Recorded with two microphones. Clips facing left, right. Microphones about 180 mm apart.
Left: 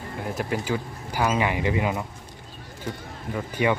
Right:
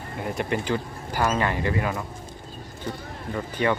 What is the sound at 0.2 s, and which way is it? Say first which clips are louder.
Speech: right 1 dB; centre (ahead or behind).